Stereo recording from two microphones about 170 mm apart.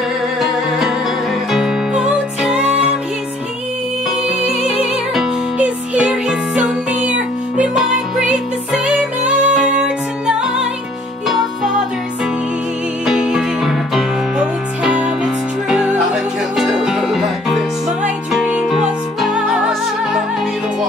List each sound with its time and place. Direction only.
0.4 s music: 5° right (ahead or behind)
4.5 s music: 35° left (ahead or behind)
5.1 s music: 5° right (ahead or behind)
8.7 s music: 5° right (ahead or behind)
13.0 s music: 5° right (ahead or behind)